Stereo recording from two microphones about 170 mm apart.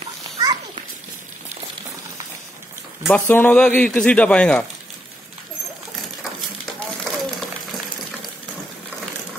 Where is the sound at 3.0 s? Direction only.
10° left (ahead or behind).